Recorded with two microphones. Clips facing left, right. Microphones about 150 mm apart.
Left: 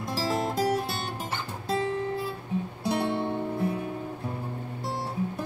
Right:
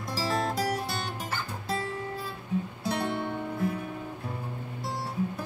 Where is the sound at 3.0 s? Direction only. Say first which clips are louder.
Left 3 dB; 25° left (ahead or behind).